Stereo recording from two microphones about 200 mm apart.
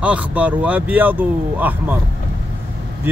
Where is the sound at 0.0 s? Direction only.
5° right (ahead or behind).